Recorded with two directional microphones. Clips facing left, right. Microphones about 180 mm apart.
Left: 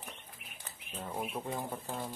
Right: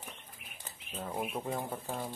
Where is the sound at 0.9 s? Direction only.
5° right (ahead or behind).